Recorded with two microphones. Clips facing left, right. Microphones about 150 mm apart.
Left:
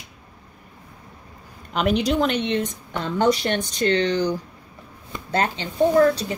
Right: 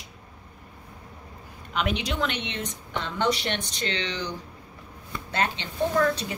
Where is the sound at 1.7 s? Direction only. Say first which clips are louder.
Left 7 dB; 40° left (ahead or behind).